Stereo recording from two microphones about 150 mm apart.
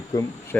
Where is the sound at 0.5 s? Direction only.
10° left (ahead or behind).